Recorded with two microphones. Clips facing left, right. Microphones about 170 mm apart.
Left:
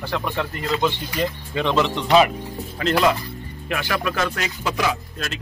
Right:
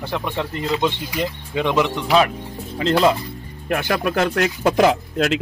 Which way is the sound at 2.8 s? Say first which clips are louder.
Right 3 dB; 25° right (ahead or behind).